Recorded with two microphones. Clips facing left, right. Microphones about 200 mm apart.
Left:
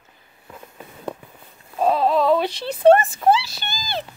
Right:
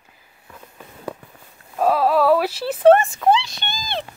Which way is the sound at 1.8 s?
5° right (ahead or behind).